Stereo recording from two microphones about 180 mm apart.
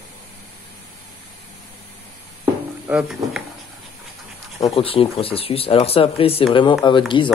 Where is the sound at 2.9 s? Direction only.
5° right (ahead or behind).